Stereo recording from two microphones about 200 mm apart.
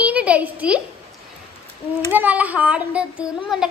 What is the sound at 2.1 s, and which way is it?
A child's voice, 10° right (ahead or behind).